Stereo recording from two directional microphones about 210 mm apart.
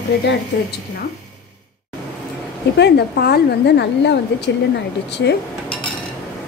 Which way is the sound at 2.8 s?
50° left (ahead or behind).